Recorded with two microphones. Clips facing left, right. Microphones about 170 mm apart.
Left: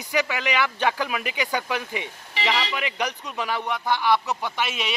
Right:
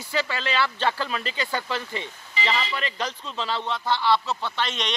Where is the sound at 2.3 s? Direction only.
75° left (ahead or behind).